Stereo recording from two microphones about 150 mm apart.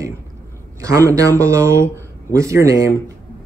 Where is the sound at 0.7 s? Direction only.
20° right (ahead or behind).